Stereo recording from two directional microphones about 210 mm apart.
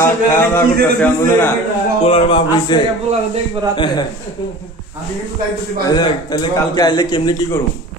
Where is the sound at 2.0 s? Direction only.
25° left (ahead or behind).